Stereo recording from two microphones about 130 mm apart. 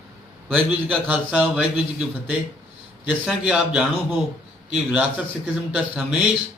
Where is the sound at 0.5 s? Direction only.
10° right (ahead or behind).